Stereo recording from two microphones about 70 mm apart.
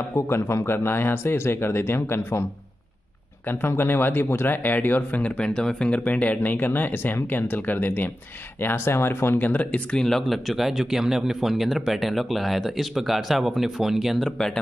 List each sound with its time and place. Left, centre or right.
0.3 s speech: left
3.6 s speech: left
5.4 s speech: centre; by 9.7 s left
9.7 s speech: centre